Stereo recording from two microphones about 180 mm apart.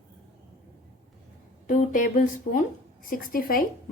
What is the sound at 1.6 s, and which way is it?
A woman's voice, 45° left (ahead or behind).